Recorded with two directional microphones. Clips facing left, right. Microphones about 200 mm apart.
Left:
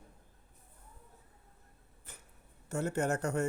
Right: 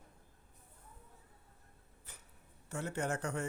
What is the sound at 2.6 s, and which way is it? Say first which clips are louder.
Speech: left 5 dB; 45° left (ahead or behind).